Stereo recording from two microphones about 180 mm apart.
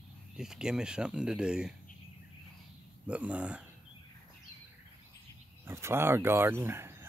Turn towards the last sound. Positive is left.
turn(degrees=-15)  # may be behind; listen again after turning